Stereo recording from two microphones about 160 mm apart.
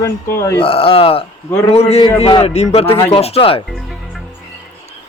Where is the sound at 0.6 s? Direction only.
35° left (ahead or behind).